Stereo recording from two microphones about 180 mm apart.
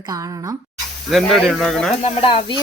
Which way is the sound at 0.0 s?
20° right (ahead or behind).